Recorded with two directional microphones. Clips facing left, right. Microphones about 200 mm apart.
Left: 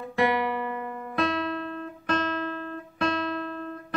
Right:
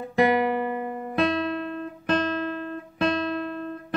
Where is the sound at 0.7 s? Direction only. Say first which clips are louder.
Right 4 dB; 15° right (ahead or behind).